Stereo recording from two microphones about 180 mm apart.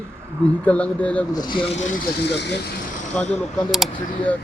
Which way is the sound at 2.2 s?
70° left (ahead or behind).